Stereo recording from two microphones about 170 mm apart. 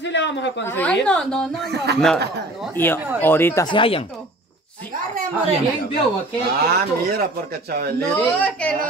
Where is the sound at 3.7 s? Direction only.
30° left (ahead or behind).